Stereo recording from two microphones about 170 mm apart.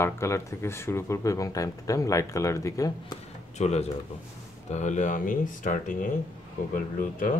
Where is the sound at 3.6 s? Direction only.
40° left (ahead or behind).